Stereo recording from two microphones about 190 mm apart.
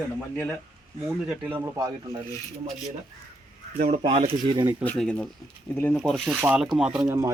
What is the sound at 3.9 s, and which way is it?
Speech, 30° right (ahead or behind).